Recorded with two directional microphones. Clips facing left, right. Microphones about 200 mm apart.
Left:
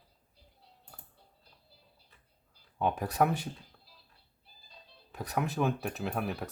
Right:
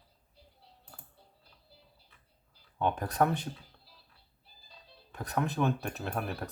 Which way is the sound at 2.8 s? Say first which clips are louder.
Even; 5° left (ahead or behind).